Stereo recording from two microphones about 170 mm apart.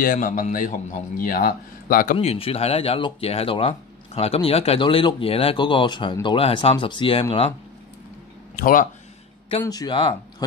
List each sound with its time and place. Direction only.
0.0 s speech: 55° left (ahead or behind)
2.1 s speech: 35° left (ahead or behind)
8.5 s speech: 55° left (ahead or behind)
9.7 s speech: 25° left (ahead or behind)